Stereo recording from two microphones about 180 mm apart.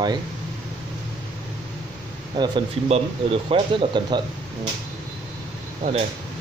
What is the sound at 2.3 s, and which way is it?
Speech, 25° right (ahead or behind).